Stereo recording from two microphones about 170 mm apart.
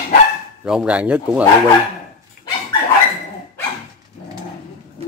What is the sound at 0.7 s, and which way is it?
Speech, 5° right (ahead or behind).